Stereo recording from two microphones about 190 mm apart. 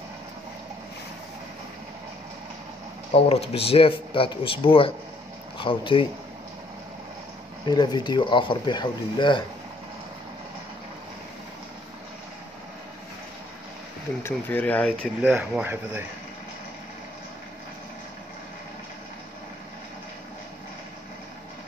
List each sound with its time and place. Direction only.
3.1 s speech: 30° left (ahead or behind)
7.6 s speech: 25° left (ahead or behind)
14.2 s speech: 10° left (ahead or behind)
15.2 s speech: 5° right (ahead or behind)